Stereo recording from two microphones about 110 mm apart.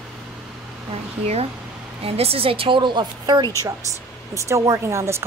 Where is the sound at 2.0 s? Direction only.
65° right (ahead or behind); by 3.5 s 45° right (ahead or behind).